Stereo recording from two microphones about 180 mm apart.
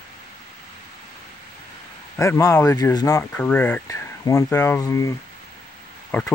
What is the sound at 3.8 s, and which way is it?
Speech, 20° left (ahead or behind).